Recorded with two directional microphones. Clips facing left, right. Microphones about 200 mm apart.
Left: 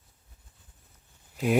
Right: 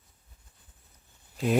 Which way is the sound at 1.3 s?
5° left (ahead or behind).